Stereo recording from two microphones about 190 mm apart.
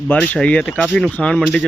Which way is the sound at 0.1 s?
5° left (ahead or behind).